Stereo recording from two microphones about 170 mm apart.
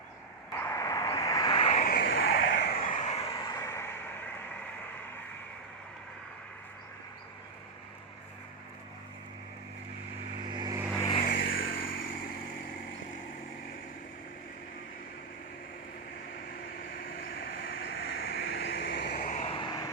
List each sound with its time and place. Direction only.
0.5 s vehicle: 15° left (ahead or behind); by 1.8 s 35° left (ahead or behind)
1.8 s vehicle: 60° left (ahead or behind); by 2.7 s 80° left
2.9 s vehicle: 45° left (ahead or behind)
3.2 s vehicle: 30° left (ahead or behind)
10.5 s vehicle: 25° right (ahead or behind)
10.9 s vehicle: 20° left (ahead or behind)
11.2 s vehicle: 60° left (ahead or behind)
18.0 s vehicle: 70° left (ahead or behind)
19.2 s vehicle: 45° left (ahead or behind)
19.5 s vehicle: 25° left (ahead or behind)